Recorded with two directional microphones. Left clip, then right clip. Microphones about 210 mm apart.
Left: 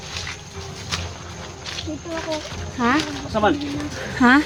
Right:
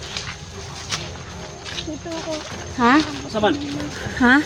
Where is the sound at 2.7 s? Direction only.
50° right (ahead or behind).